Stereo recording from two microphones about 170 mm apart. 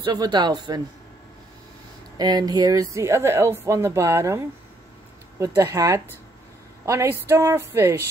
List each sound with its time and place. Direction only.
0.0 s speech: 25° right (ahead or behind)
2.1 s speech: 25° right (ahead or behind)